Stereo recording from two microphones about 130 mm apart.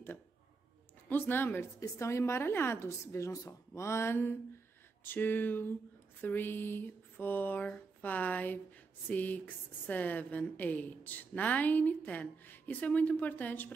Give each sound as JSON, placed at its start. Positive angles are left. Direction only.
{"t": 1.0, "sound": "a woman's voice", "side_deg": 15}